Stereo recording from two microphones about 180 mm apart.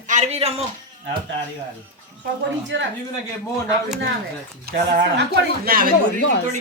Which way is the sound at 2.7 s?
90° right.